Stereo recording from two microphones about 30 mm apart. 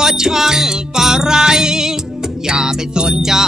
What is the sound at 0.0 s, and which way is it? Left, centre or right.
Music, centre.